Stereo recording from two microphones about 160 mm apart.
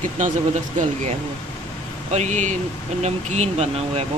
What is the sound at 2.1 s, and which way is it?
Speech, 45° right (ahead or behind).